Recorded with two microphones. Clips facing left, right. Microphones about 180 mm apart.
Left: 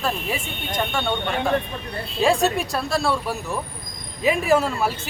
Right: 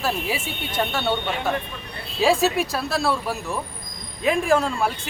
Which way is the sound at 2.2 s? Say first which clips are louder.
Even; centre (ahead or behind).